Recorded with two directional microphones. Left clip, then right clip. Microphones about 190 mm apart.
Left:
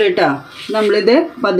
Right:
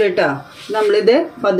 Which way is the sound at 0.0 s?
40° left (ahead or behind).